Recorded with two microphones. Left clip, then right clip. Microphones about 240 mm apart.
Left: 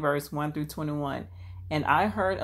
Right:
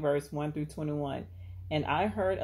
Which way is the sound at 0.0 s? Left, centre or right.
Left.